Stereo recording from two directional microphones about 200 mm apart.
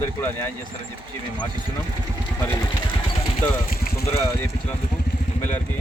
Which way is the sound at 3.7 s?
45° left (ahead or behind).